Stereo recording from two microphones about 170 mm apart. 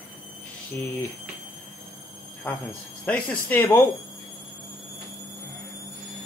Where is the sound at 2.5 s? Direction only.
10° left (ahead or behind).